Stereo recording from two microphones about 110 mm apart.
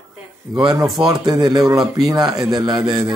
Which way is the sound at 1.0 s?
35° right (ahead or behind).